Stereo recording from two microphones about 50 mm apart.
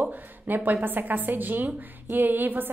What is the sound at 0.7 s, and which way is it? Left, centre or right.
A woman's voice, right.